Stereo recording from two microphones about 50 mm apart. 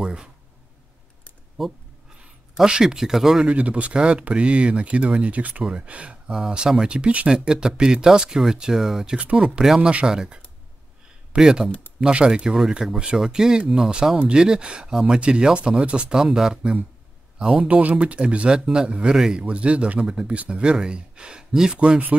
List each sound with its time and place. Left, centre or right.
0.0 s a sound: centre
1.6 s speech: centre
3.4 s speech: right
10.0 s speech: centre
16.2 s speech: centre
17.6 s speech: right; by 19.4 s centre
19.4 s speech: right
21.7 s speech: right